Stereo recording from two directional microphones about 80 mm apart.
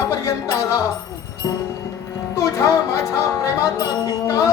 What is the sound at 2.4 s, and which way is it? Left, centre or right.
Music, left.